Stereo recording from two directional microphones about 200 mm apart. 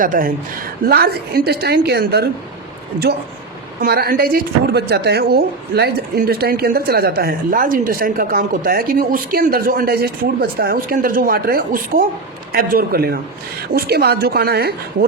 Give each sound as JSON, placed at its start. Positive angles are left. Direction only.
{"t": 0.0, "sound": "speech", "side_deg": -45}
{"t": 3.8, "sound": "speech", "side_deg": -50}